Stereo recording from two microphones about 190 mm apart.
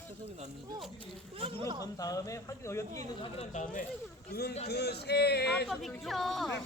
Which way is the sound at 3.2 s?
35° left (ahead or behind).